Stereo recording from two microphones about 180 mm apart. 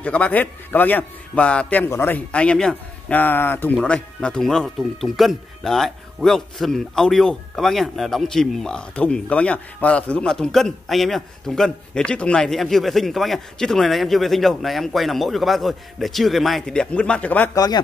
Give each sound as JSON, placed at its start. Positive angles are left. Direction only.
{"t": 0.0, "sound": "a man's voice", "side_deg": 10}
{"t": 17.6, "sound": "speech", "side_deg": 20}